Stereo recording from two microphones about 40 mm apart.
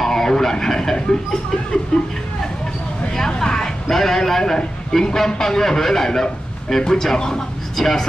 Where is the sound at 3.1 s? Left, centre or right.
Centre.